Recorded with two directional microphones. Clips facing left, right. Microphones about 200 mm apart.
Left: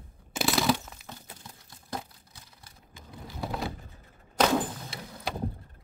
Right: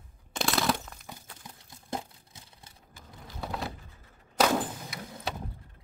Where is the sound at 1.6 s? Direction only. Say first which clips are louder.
Right 1 dB; 25° right (ahead or behind).